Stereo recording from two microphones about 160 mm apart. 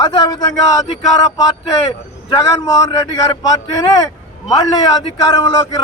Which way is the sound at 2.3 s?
25° left (ahead or behind).